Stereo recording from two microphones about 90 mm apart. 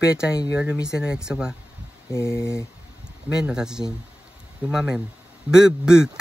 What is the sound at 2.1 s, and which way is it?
Speech, 30° left (ahead or behind).